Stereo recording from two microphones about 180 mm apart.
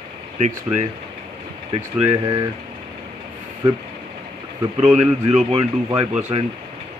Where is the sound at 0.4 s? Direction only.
40° right (ahead or behind).